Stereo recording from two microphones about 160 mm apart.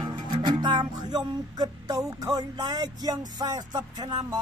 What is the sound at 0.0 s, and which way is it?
Speech, 30° right (ahead or behind).